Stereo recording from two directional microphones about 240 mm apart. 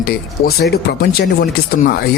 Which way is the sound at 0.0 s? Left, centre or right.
Left.